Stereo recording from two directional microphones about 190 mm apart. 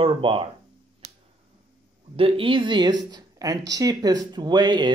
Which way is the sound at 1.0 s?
55° right (ahead or behind).